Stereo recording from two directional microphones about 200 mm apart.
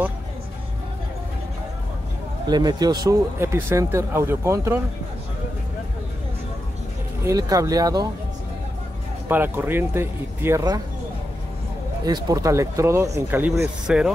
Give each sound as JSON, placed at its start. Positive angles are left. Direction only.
{"t": 2.4, "sound": "speech", "side_deg": -20}
{"t": 7.2, "sound": "speech", "side_deg": -15}
{"t": 9.3, "sound": "speech", "side_deg": -10}
{"t": 12.3, "sound": "speech", "side_deg": -15}